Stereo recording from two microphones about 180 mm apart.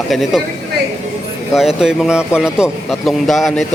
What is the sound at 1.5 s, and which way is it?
A man's voice, centre (ahead or behind).